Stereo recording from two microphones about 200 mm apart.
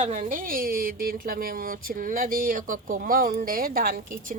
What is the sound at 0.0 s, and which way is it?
Speech, 35° right (ahead or behind).